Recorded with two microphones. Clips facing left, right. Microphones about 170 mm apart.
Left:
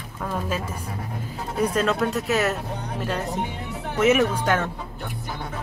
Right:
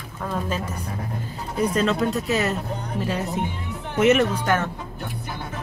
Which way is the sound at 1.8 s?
5° left (ahead or behind).